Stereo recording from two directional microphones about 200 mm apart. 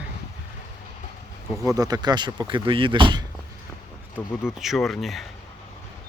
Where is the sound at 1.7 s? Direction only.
20° right (ahead or behind).